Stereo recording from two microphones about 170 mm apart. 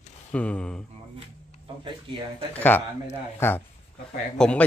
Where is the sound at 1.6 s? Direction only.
30° right (ahead or behind).